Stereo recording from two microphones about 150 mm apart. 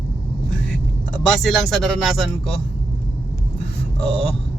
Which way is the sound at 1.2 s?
Centre (ahead or behind).